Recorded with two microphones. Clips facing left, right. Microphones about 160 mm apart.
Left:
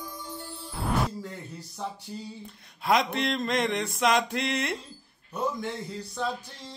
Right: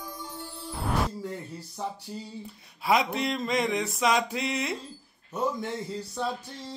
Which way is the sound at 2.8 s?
5° right (ahead or behind).